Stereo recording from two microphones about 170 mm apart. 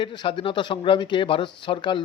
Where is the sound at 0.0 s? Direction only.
30° left (ahead or behind).